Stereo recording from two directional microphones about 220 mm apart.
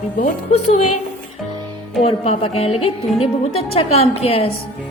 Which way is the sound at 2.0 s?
30° left (ahead or behind).